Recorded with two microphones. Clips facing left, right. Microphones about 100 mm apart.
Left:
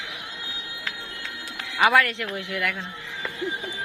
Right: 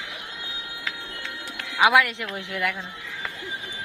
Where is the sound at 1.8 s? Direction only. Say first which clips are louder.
Right 1 dB; 15° right (ahead or behind).